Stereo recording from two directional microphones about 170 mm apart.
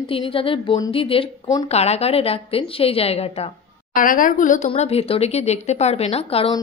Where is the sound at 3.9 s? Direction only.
55° left (ahead or behind).